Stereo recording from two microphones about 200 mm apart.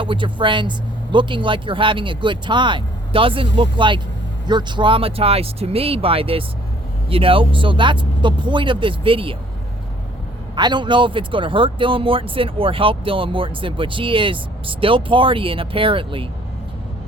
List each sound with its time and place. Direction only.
0.0 s speech: 25° right (ahead or behind)
10.5 s speech: 20° right (ahead or behind)